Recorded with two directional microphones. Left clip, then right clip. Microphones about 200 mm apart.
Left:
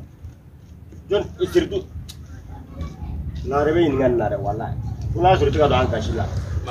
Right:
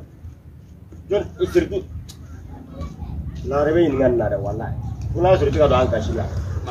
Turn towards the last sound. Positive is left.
turn(degrees=-5)  # may be behind; listen again after turning